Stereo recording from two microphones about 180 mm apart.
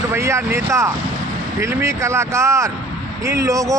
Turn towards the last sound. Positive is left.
turn(degrees=-20)  # may be behind; listen again after turning